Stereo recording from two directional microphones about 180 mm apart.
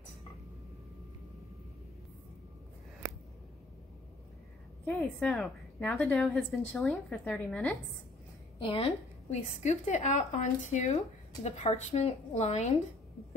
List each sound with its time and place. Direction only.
4.9 s a woman's voice: 5° left (ahead or behind)
8.5 s a woman's voice: 30° left (ahead or behind)